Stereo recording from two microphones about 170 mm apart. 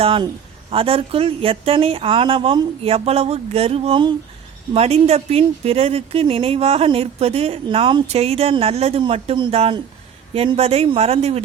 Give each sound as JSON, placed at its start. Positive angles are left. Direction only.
{"t": 0.0, "sound": "speech", "side_deg": -30}